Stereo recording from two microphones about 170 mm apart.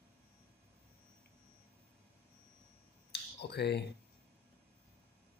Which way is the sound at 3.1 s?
75° left (ahead or behind).